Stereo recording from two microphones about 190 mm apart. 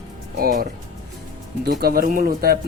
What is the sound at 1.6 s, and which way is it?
Speech, 55° right (ahead or behind).